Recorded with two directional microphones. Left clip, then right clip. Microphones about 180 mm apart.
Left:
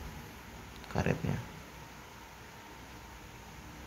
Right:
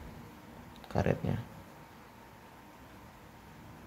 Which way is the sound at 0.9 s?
30° right (ahead or behind).